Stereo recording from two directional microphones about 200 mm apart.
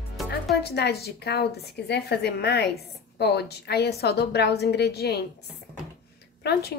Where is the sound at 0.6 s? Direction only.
55° left (ahead or behind).